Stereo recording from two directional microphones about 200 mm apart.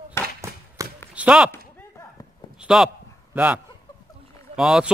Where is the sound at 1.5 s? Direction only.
10° left (ahead or behind).